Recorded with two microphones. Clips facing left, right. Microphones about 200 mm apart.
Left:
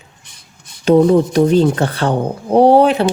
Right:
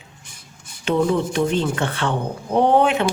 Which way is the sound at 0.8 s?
40° left (ahead or behind).